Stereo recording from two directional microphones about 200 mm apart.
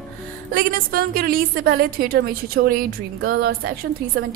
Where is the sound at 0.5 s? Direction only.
45° right (ahead or behind).